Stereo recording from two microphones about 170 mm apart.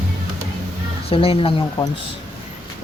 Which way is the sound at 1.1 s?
35° left (ahead or behind).